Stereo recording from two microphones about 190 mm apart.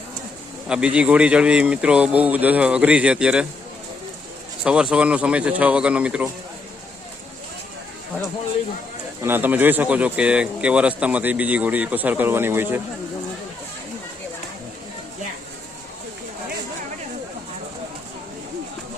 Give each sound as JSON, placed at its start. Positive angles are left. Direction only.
{"t": 0.7, "sound": "speech", "side_deg": -5}
{"t": 4.6, "sound": "speech", "side_deg": -5}
{"t": 9.2, "sound": "speech", "side_deg": -10}